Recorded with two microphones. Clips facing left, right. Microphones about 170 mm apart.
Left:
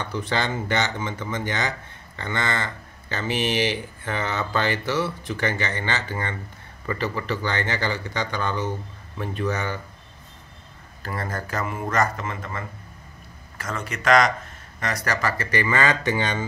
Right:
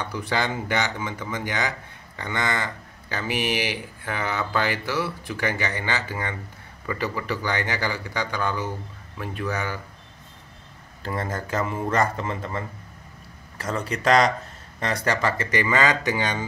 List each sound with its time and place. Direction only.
0.1 s speech: 10° right (ahead or behind)
11.0 s speech: 20° right (ahead or behind)